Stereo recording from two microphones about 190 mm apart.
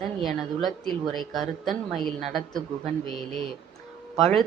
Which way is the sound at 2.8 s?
30° right (ahead or behind).